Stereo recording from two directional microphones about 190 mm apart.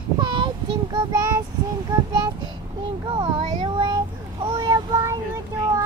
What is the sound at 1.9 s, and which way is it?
Child singing, 20° right (ahead or behind).